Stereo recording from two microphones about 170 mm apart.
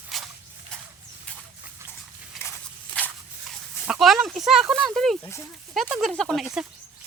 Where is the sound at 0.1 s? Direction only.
Centre (ahead or behind).